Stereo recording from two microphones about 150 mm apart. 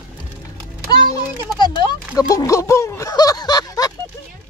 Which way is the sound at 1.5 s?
30° left (ahead or behind).